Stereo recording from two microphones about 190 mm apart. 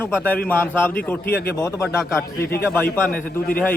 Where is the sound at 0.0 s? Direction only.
10° left (ahead or behind).